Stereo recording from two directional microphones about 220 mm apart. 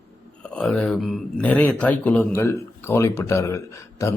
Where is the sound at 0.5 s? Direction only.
5° left (ahead or behind).